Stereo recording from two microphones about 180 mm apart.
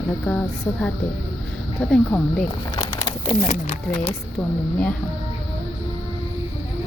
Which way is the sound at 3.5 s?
35° left (ahead or behind).